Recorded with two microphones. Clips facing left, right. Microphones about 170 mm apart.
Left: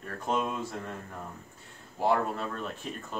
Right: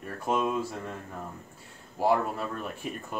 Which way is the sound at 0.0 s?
10° right (ahead or behind).